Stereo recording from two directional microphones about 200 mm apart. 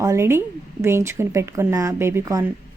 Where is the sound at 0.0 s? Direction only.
15° right (ahead or behind).